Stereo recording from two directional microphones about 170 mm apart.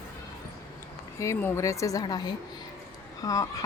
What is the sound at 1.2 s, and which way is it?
A woman's voice, 15° left (ahead or behind).